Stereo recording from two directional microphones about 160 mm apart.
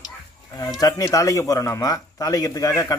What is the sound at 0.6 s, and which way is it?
Speech, 25° left (ahead or behind).